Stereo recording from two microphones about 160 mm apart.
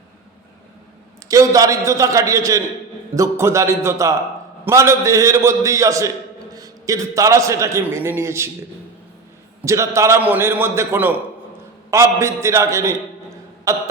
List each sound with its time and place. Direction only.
1.3 s a man's voice: 20° right (ahead or behind)
9.6 s a man's voice: 20° right (ahead or behind)